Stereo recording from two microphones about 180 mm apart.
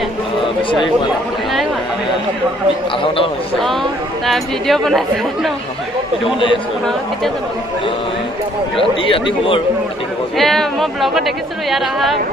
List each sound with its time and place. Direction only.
4.3 s speech: centre (ahead or behind)
8.7 s speech: 30° left (ahead or behind)
10.3 s speech: centre (ahead or behind)